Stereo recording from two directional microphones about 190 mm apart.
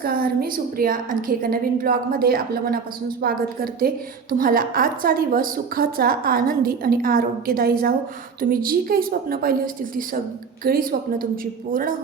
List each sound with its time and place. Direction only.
0.0 s a woman's voice: 50° right (ahead or behind)